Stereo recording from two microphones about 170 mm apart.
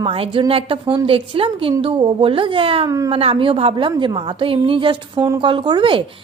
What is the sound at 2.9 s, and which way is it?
Speech, 20° right (ahead or behind).